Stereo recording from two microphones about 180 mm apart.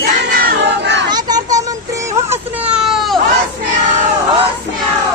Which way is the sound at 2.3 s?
5° right (ahead or behind).